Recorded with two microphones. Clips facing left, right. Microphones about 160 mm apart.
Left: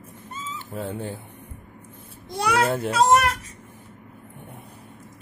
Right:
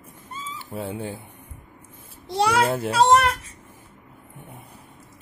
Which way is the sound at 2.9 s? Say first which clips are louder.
Right 1 dB; 30° right (ahead or behind).